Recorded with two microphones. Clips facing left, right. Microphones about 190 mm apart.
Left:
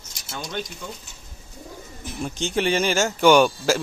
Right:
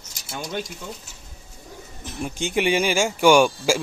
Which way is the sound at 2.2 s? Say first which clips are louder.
Right 1 dB; 15° right (ahead or behind).